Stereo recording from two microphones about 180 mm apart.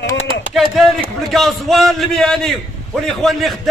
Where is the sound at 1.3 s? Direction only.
Centre (ahead or behind).